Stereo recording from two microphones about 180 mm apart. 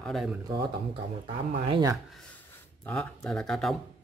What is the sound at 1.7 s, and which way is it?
Speech, 20° right (ahead or behind).